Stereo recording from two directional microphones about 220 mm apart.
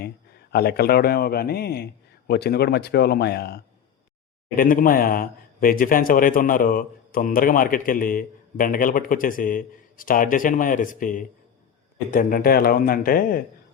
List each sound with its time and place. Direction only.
0.5 s a man's voice: 45° left (ahead or behind)